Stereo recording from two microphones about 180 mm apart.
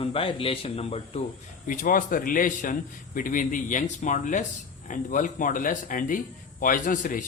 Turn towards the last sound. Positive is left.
turn(degrees=50)  # may be behind; listen again after turning